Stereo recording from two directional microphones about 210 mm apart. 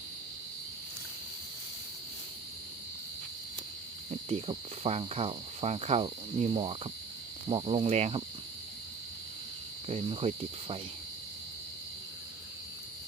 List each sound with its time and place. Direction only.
4.3 s speech: 30° right (ahead or behind)
9.9 s speech: 30° right (ahead or behind)